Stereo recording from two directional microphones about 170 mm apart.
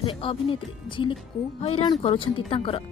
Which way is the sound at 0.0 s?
30° left (ahead or behind).